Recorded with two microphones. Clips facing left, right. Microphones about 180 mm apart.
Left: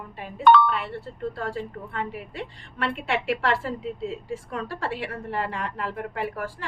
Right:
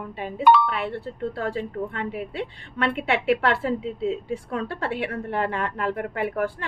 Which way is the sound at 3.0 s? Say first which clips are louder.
Right 5 dB; 60° right (ahead or behind).